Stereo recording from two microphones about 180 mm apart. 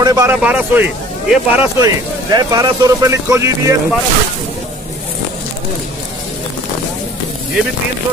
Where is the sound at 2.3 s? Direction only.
20° right (ahead or behind).